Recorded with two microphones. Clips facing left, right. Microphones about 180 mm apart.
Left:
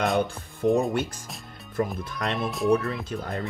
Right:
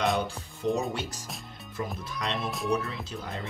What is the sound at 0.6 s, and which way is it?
Speech, 55° left (ahead or behind).